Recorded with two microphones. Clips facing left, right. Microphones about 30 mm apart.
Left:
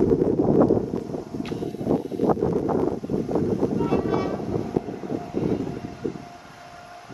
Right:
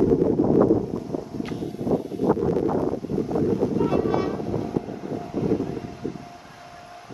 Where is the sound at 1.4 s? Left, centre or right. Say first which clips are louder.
Left 3 dB; left.